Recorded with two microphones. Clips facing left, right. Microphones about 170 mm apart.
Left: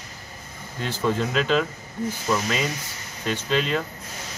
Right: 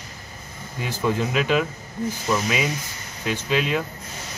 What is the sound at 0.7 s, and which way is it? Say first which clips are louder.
Speech: even; 10° right (ahead or behind).